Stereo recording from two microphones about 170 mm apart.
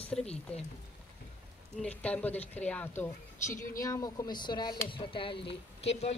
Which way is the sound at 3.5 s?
55° left (ahead or behind).